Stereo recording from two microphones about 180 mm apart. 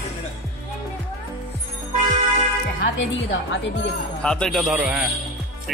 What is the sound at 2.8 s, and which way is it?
Speech, 90° left.